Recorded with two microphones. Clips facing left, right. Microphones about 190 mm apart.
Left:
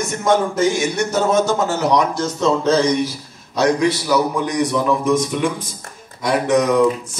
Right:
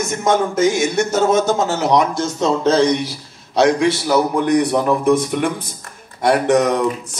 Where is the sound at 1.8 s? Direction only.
25° right (ahead or behind).